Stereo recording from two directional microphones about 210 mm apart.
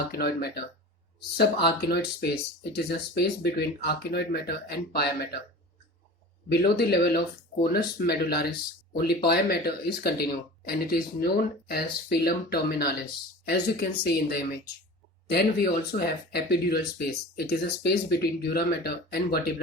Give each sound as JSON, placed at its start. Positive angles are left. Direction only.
{"t": 0.1, "sound": "speech", "side_deg": 50}
{"t": 6.5, "sound": "speech", "side_deg": 50}